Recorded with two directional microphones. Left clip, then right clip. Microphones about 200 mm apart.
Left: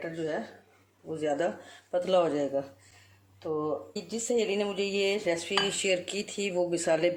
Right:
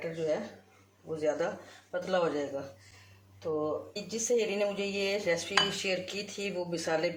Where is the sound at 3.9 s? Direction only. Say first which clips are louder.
Even; 50° left (ahead or behind).